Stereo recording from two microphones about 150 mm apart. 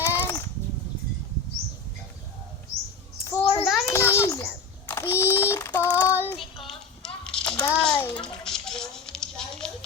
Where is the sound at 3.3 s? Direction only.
25° left (ahead or behind).